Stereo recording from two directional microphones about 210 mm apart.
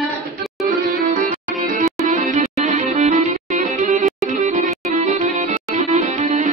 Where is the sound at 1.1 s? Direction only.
35° right (ahead or behind).